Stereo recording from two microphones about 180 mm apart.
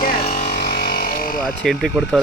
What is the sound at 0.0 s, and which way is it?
Electric shaver, 55° left (ahead or behind).